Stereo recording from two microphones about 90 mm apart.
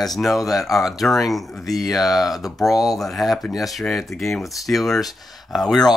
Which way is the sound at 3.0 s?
Centre (ahead or behind).